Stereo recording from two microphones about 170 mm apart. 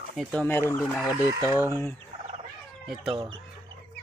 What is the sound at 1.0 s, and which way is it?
Speech, 10° right (ahead or behind).